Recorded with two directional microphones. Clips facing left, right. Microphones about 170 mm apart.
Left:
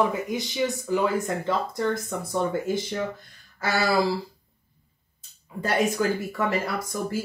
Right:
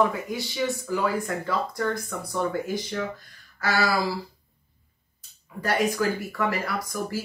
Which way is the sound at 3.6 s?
25° left (ahead or behind).